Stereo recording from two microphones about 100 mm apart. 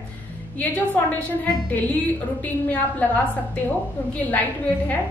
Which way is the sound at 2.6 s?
15° left (ahead or behind).